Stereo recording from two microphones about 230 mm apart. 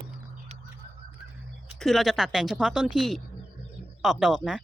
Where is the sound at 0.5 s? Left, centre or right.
Right.